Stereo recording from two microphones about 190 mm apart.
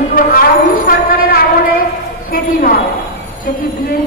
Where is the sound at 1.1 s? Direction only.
50° left (ahead or behind).